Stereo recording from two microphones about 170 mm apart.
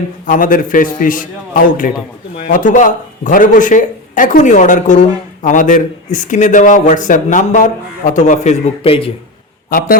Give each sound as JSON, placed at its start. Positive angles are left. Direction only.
{"t": 0.3, "sound": "a man's voice", "side_deg": 55}
{"t": 9.6, "sound": "a man's voice", "side_deg": 60}